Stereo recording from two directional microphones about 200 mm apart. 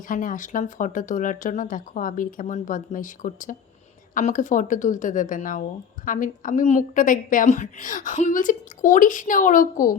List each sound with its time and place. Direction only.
0.1 s a woman's voice: 40° left (ahead or behind)